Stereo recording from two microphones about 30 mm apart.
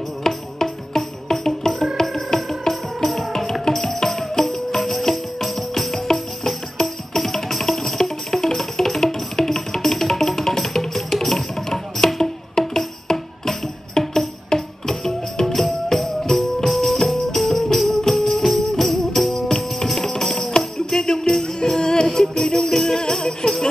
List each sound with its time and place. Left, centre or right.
0.2 s music: centre
7.2 s music: centre
20.9 s music: left; by 22.9 s centre
23.1 s music: centre